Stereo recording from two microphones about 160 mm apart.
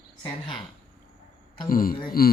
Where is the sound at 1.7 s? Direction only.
60° left (ahead or behind).